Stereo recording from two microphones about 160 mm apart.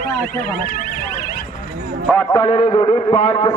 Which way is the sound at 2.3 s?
35° left (ahead or behind).